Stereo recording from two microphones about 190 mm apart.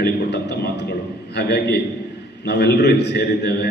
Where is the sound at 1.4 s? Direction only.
60° left (ahead or behind).